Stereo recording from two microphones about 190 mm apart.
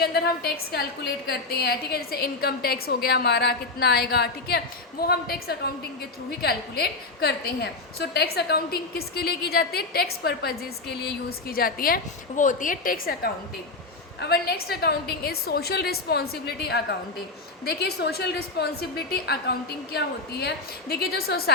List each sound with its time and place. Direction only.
0.0 s a woman's voice: 55° left (ahead or behind)